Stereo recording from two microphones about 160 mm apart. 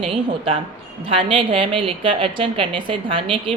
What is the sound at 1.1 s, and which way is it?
A woman's voice, 35° right (ahead or behind).